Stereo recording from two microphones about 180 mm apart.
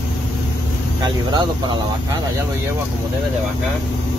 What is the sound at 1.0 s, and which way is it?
Speech, 25° right (ahead or behind).